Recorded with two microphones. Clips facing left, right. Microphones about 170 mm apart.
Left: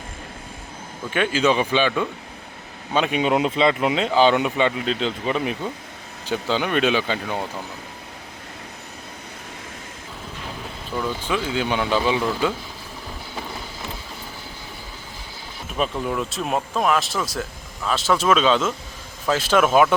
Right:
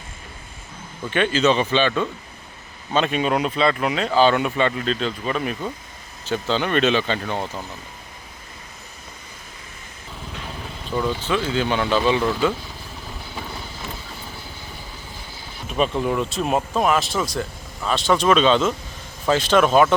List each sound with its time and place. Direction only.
1.1 s speech: 10° left (ahead or behind)
11.2 s speech: 10° left (ahead or behind)
16.0 s speech: centre (ahead or behind)